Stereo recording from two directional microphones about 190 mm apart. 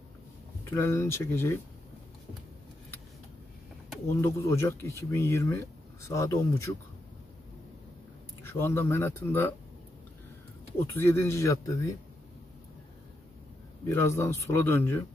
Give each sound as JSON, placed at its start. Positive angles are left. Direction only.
{"t": 0.7, "sound": "speech", "side_deg": 15}
{"t": 4.1, "sound": "speech", "side_deg": 15}
{"t": 8.5, "sound": "speech", "side_deg": 10}
{"t": 11.0, "sound": "speech", "side_deg": 15}
{"t": 13.8, "sound": "speech", "side_deg": 15}